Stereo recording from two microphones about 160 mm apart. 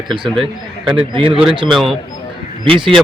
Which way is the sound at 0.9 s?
35° right (ahead or behind).